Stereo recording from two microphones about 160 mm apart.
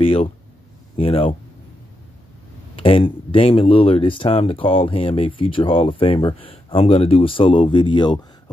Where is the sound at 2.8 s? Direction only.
35° left (ahead or behind).